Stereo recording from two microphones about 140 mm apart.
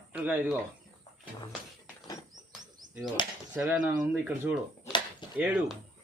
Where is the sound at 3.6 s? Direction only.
10° right (ahead or behind).